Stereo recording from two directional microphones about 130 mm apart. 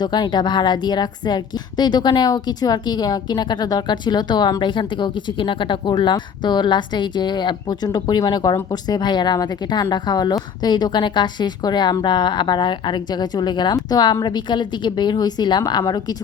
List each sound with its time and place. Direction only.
0.0 s a woman's voice: 35° left (ahead or behind)